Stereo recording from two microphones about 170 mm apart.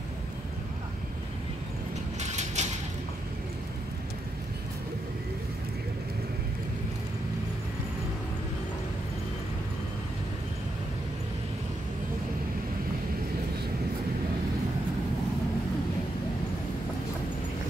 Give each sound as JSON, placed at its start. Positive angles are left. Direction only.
{"t": 2.1, "sound": "mechanisms", "side_deg": -45}